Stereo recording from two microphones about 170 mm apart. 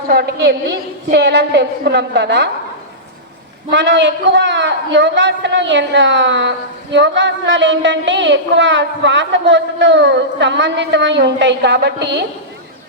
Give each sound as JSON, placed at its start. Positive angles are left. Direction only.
{"t": 0.1, "sound": "a woman's voice", "side_deg": -70}
{"t": 3.7, "sound": "speech", "side_deg": -90}